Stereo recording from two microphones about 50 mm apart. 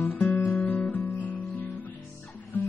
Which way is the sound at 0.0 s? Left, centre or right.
Left.